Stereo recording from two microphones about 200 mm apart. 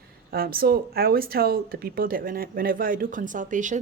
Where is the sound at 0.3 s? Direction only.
50° right (ahead or behind).